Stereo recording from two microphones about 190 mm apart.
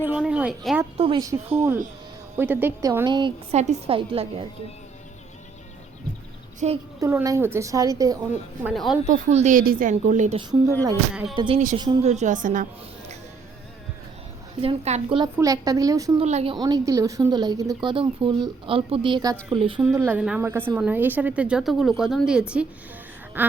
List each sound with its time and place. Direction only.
0.0 s speech: 5° right (ahead or behind)
0.9 s a woman's voice: 25° right (ahead or behind)
3.5 s a woman's voice: 35° right (ahead or behind)
6.6 s a woman's voice: 35° right (ahead or behind)
7.0 s a woman's voice: 15° right (ahead or behind)
8.6 s speech: centre (ahead or behind)
9.0 s a woman's voice: 40° right (ahead or behind)
11.1 s speech: 5° right (ahead or behind)
11.3 s a woman's voice: 25° right (ahead or behind)
12.0 s a woman's voice: 40° right (ahead or behind)
14.6 s a woman's voice: 30° right (ahead or behind)
15.2 s a woman's voice: 20° right (ahead or behind)
16.2 s a woman's voice: 35° right (ahead or behind)
19.8 s a woman's voice: 10° right (ahead or behind)